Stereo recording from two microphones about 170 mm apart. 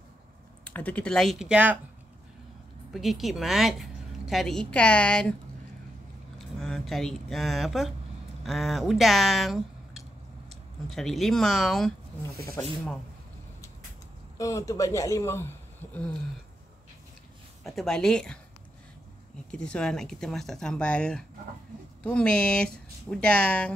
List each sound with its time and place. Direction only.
0.7 s speech: 10° left (ahead or behind); by 1.8 s 10° right (ahead or behind)
2.9 s a woman's voice: centre (ahead or behind)
6.3 s a sound: 5° left (ahead or behind)
8.5 s speech: centre (ahead or behind)
14.4 s speech: 20° left (ahead or behind)
17.6 s speech: centre (ahead or behind)
19.5 s speech: 5° left (ahead or behind)